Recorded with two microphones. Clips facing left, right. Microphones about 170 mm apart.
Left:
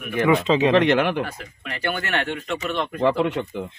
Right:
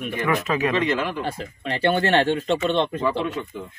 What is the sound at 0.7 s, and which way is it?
Speech, 65° left (ahead or behind).